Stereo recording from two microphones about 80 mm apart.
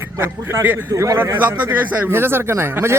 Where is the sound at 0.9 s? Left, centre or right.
Right.